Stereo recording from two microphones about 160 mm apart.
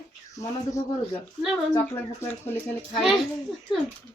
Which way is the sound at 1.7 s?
15° left (ahead or behind).